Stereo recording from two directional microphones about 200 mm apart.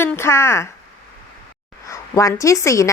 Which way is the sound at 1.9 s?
15° left (ahead or behind).